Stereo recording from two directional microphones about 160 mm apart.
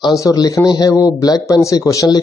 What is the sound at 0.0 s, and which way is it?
A man's voice, 20° left (ahead or behind).